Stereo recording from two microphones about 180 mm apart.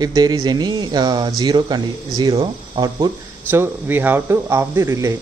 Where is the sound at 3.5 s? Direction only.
10° right (ahead or behind).